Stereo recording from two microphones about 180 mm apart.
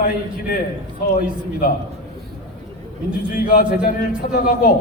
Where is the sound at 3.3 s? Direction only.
55° left (ahead or behind).